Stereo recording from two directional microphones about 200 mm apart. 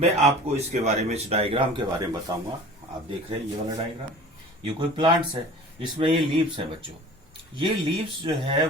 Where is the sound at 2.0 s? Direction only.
20° right (ahead or behind).